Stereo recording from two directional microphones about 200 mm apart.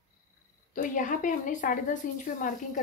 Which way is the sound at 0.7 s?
40° left (ahead or behind).